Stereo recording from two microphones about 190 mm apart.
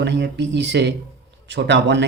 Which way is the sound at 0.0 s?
65° right (ahead or behind).